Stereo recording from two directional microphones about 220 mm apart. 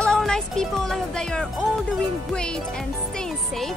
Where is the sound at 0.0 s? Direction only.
5° left (ahead or behind).